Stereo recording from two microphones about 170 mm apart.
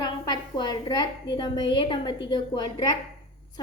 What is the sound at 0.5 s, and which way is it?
A woman's voice, 25° left (ahead or behind).